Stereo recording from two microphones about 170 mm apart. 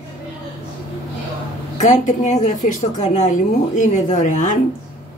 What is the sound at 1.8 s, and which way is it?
A woman's voice, 45° left (ahead or behind).